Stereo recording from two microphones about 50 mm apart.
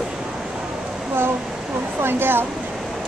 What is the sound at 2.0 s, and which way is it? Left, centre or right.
Speech, right.